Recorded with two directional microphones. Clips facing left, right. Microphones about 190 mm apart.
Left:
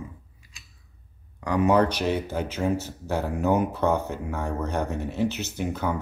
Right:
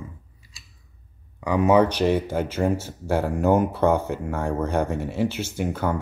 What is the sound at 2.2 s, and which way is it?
Speech, 50° right (ahead or behind).